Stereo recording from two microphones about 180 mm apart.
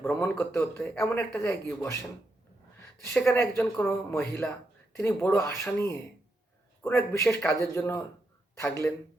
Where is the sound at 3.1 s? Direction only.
10° left (ahead or behind).